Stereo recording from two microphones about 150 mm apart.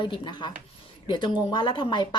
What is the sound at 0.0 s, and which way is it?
Speech, 30° left (ahead or behind).